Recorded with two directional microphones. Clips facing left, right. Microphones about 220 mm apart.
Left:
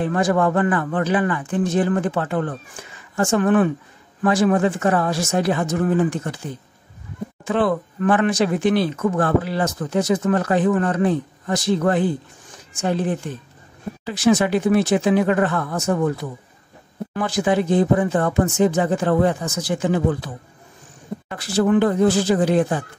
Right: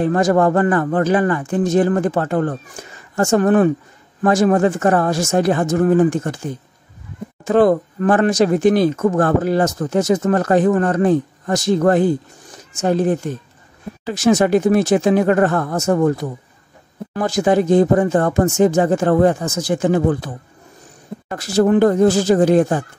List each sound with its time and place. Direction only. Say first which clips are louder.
0.0 s speech: right 4 dB; 40° right (ahead or behind)
21.3 s speech: right 3 dB; 45° right (ahead or behind)